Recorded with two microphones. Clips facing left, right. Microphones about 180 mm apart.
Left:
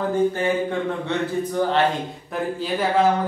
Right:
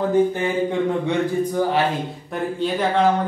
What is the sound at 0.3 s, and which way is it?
Speech, 15° right (ahead or behind).